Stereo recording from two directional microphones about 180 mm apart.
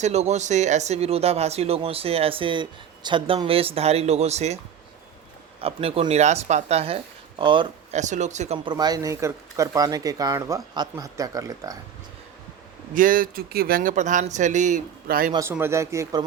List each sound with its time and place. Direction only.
0.0 s speech: 40° right (ahead or behind)
7.9 s speech: 40° right (ahead or behind)
8.6 s speech: 25° right (ahead or behind)
12.9 s speech: 50° right (ahead or behind)
15.0 s speech: 55° right (ahead or behind)
15.3 s speech: 20° right (ahead or behind)